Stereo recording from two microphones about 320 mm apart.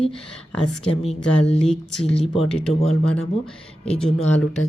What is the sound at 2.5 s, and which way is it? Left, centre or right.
Speech, centre.